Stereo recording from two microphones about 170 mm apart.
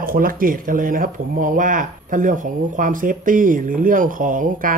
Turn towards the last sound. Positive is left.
turn(degrees=-50)  # may be behind; listen again after turning